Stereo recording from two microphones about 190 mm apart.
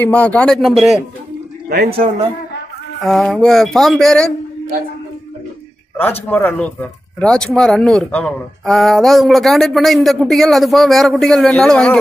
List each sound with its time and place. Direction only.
0.0 s speech: 10° left (ahead or behind)
1.9 s a man's voice: 30° right (ahead or behind)
3.0 s speech: centre (ahead or behind)
6.2 s speech: 10° left (ahead or behind)